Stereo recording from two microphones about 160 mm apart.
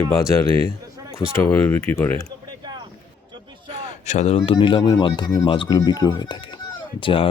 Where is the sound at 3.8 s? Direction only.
45° left (ahead or behind).